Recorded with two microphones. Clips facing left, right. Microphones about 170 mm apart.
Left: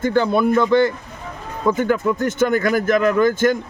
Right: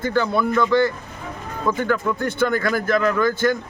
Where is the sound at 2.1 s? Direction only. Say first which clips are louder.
Left 3 dB; 45° left (ahead or behind).